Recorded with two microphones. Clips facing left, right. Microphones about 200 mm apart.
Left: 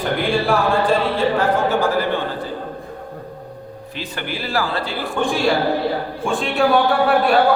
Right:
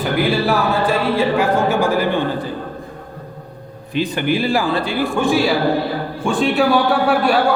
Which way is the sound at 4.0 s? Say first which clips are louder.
Right 10 dB; 15° right (ahead or behind).